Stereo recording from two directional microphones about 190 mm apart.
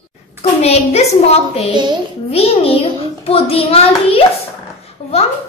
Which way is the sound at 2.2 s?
30° left (ahead or behind).